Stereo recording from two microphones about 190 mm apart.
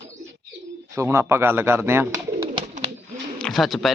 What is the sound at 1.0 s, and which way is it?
Speech, 15° right (ahead or behind).